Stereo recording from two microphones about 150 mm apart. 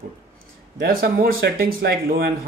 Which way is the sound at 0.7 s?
80° right.